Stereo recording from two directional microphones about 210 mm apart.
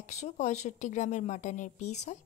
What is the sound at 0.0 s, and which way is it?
A woman's voice, 35° left (ahead or behind).